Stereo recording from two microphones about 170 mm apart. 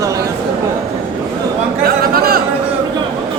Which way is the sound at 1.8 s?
65° right (ahead or behind).